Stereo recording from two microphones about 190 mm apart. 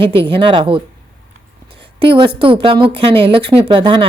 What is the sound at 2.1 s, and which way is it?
A woman's voice, 25° right (ahead or behind).